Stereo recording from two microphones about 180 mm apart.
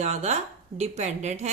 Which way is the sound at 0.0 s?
40° right (ahead or behind).